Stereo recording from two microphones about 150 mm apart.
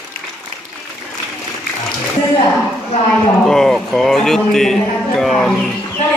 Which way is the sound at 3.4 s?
5° left (ahead or behind).